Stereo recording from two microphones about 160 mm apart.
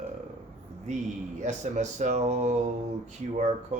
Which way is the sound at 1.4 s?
50° right (ahead or behind).